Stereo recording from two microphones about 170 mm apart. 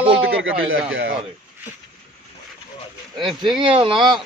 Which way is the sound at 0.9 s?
90° right.